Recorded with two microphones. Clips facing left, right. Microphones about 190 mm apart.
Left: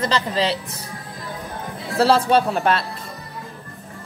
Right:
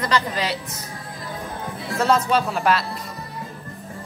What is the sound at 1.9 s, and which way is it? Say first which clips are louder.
Speech: left 3 dB; 30° left (ahead or behind).